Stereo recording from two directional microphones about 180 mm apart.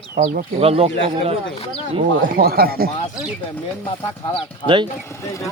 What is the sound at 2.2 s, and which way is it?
Speech, 55° right (ahead or behind).